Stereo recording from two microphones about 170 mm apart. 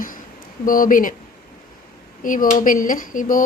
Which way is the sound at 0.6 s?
55° left (ahead or behind).